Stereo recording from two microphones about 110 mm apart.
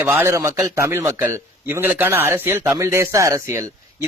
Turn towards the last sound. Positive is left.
turn(degrees=-25)  # may be behind; listen again after turning